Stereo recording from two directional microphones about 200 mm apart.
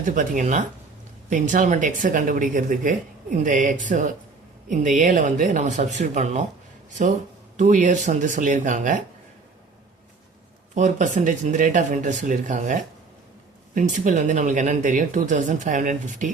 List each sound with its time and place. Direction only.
0.0 s speech: 40° right (ahead or behind)
7.5 s speech: 40° right (ahead or behind)
10.8 s speech: 40° right (ahead or behind)